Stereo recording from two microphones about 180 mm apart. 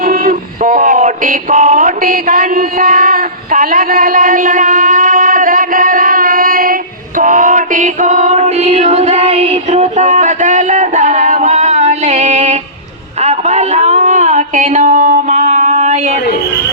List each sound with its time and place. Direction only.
0.0 s male singing: 50° right (ahead or behind)
7.2 s music: 45° right (ahead or behind)
13.2 s a sound: 40° right (ahead or behind)